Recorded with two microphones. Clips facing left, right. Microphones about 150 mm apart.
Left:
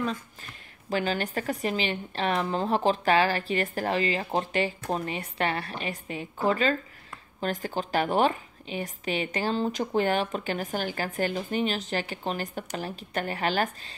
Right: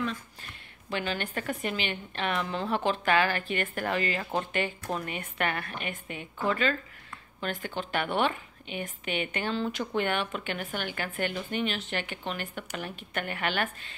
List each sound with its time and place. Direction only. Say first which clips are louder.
0.8 s a woman's voice: left 4 dB; 40° left (ahead or behind)